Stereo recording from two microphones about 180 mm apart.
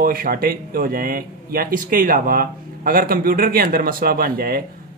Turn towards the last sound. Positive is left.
turn(degrees=-55)  # may be behind; listen again after turning